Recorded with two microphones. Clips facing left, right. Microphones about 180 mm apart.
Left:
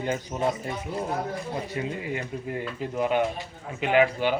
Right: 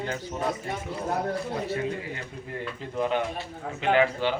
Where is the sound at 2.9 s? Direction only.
10° left (ahead or behind).